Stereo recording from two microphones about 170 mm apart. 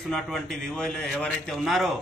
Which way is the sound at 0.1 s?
Centre (ahead or behind).